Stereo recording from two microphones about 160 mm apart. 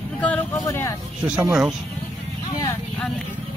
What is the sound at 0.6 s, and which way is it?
Speech, 20° left (ahead or behind).